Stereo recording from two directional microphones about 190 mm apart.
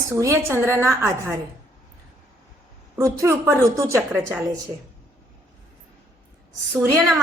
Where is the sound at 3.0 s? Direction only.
15° right (ahead or behind).